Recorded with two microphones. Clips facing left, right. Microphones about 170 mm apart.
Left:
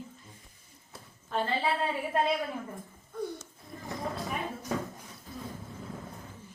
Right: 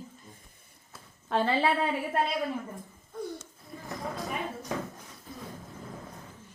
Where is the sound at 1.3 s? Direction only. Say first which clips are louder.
Right 4 dB; 80° right.